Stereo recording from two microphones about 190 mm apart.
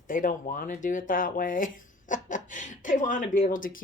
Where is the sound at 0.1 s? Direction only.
45° left (ahead or behind).